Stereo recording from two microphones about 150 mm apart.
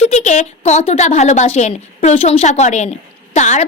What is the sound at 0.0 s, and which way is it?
A woman's voice, 50° left (ahead or behind).